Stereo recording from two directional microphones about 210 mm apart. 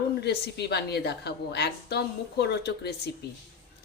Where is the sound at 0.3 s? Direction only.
50° left (ahead or behind).